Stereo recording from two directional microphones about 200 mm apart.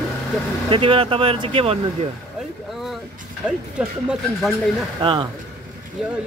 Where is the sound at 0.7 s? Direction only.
25° right (ahead or behind).